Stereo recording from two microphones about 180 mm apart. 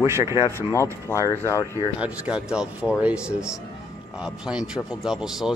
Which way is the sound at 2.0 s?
5° right (ahead or behind).